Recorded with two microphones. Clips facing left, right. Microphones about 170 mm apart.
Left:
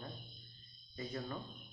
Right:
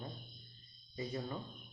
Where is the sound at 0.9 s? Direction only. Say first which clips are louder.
Right 2 dB; 15° right (ahead or behind).